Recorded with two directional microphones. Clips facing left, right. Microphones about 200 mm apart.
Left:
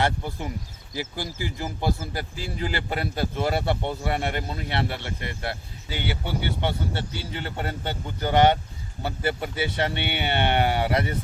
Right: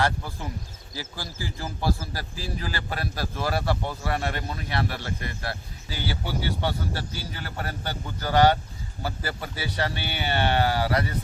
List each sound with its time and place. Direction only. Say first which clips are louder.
0.0 s a man's voice: left 1 dB; 20° left (ahead or behind)